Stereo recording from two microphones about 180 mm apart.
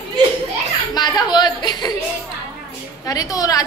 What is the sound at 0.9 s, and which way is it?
A woman's voice, 25° left (ahead or behind).